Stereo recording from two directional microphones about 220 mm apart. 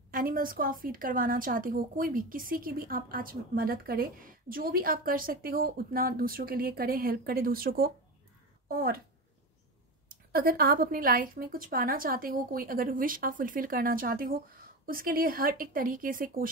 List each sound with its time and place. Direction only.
0.1 s a woman's voice: 40° right (ahead or behind)
10.3 s a woman's voice: 40° right (ahead or behind)